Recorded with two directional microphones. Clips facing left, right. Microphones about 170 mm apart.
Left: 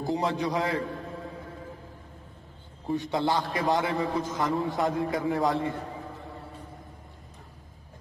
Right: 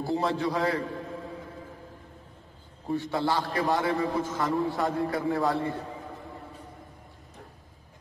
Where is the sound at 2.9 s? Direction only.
20° left (ahead or behind).